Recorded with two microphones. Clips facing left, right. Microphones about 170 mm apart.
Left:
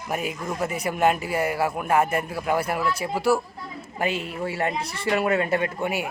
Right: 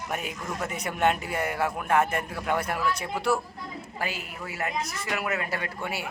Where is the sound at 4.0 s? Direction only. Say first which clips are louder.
Left 8 dB; 25° left (ahead or behind).